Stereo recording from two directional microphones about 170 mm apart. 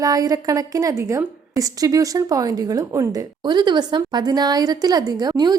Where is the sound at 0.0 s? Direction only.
20° right (ahead or behind).